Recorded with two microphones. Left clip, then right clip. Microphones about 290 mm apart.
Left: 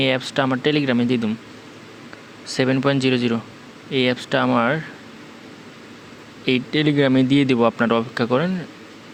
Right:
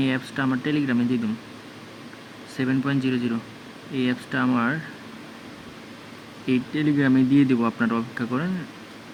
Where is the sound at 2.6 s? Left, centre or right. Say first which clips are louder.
Left 6 dB; left.